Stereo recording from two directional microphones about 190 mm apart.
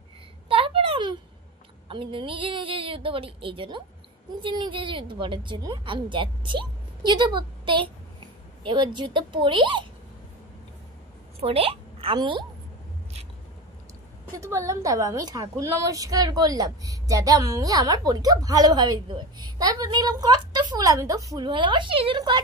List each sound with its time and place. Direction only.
0.5 s a sound: 30° right (ahead or behind)
1.9 s a woman's voice: 25° right (ahead or behind)
11.4 s speech: 30° right (ahead or behind)
14.4 s a woman's voice: 15° right (ahead or behind)